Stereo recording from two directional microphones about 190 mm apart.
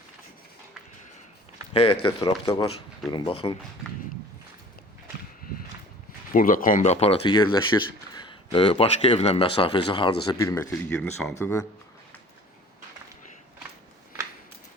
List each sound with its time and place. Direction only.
1.7 s speech: 30° left (ahead or behind)
6.3 s speech: 45° left (ahead or behind); by 10.9 s 15° left (ahead or behind)
10.9 s speech: 5° left (ahead or behind)
11.3 s speech: 15° left (ahead or behind)